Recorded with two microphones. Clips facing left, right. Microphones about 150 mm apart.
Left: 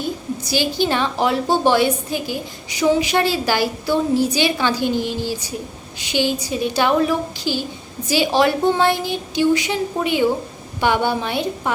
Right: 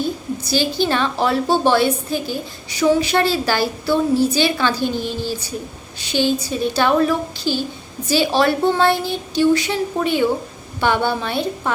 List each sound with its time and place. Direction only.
0.0 s a woman's voice: 15° left (ahead or behind)